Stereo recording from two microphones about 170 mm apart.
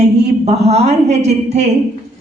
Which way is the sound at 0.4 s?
40° right (ahead or behind).